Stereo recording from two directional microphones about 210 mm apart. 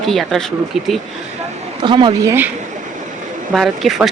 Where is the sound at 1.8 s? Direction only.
20° right (ahead or behind).